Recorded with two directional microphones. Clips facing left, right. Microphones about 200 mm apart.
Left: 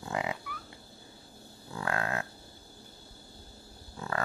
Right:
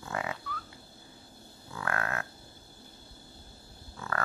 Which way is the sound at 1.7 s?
25° left (ahead or behind).